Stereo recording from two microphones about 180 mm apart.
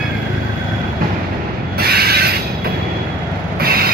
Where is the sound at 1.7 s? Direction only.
60° right (ahead or behind).